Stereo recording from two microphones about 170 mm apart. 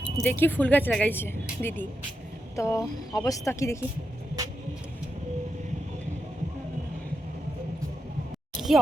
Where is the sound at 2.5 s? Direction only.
15° left (ahead or behind).